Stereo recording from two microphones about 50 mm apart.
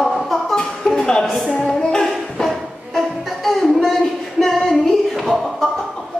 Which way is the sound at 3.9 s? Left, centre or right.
Centre.